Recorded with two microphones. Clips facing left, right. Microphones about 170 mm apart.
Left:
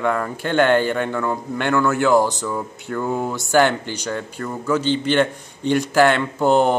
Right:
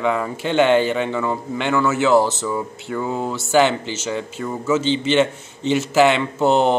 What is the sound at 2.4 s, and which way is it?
Speech, 5° right (ahead or behind).